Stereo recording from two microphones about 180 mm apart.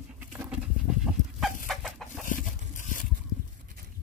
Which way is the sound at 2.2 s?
45° left (ahead or behind).